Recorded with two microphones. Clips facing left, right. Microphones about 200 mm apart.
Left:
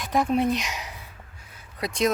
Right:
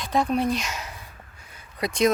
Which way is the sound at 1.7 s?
Centre (ahead or behind).